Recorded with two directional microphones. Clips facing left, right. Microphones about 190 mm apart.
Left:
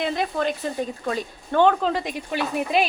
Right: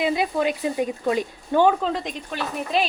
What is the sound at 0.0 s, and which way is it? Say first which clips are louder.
Speech: right 2 dB; 10° right (ahead or behind).